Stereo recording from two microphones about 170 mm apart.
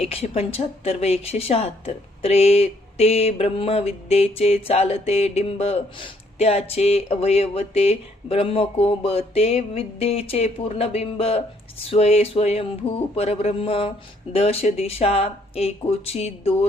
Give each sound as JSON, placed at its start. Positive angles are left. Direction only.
{"t": 0.0, "sound": "speech", "side_deg": 35}